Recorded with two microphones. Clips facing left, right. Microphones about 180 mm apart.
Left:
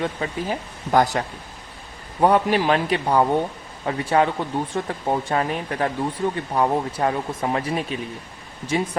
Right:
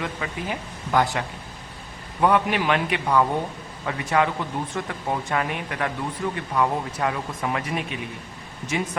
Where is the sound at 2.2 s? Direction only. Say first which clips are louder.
Left 3 dB; 35° left (ahead or behind).